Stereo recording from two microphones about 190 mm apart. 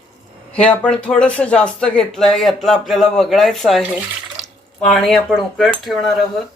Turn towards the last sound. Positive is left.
turn(degrees=0)  # may be behind; listen again after turning